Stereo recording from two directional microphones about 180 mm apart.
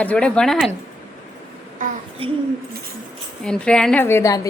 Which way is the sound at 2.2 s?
30° right (ahead or behind).